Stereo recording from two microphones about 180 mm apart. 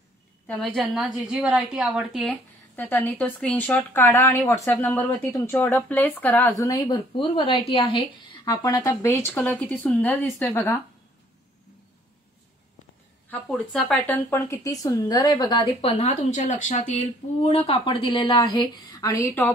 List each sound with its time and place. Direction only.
0.5 s speech: 5° left (ahead or behind)
13.3 s speech: 5° left (ahead or behind)